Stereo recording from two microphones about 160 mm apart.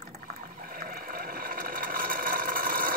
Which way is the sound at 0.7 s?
60° right (ahead or behind).